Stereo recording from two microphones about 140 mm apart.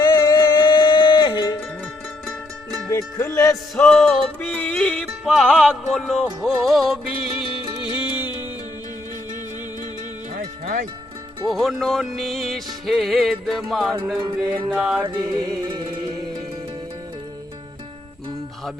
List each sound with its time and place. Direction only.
0.0 s music: 30° left (ahead or behind)
2.9 s speech: 20° left (ahead or behind)
3.8 s music: 5° left (ahead or behind)
7.3 s music: 40° left (ahead or behind)
7.9 s music: 15° right (ahead or behind)
10.3 s music: 80° right
11.4 s music: centre (ahead or behind)
14.2 s music: 35° right (ahead or behind)
14.7 s music: 10° right (ahead or behind)
15.0 s music: 30° right (ahead or behind)